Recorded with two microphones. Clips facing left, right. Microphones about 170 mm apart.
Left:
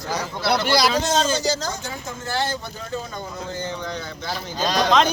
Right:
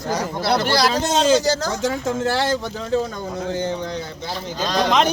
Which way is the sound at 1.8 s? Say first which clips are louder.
Right 11 dB; 90° right.